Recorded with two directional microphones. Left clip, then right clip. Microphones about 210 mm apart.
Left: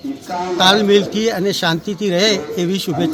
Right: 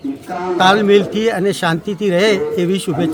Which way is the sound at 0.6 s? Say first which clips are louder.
Right 1 dB; 5° right (ahead or behind).